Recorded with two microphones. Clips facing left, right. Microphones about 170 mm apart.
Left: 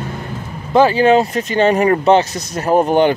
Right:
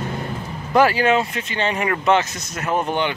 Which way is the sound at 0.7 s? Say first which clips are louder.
Left 5 dB; 25° left (ahead or behind).